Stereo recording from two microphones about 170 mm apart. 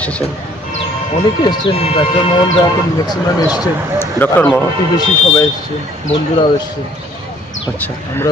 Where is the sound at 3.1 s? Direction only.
25° left (ahead or behind).